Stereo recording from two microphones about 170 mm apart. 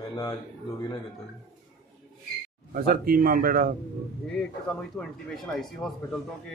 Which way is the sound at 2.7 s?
60° right (ahead or behind).